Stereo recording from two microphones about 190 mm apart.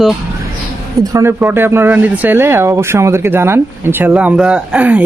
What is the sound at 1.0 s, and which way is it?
Speech, 15° right (ahead or behind).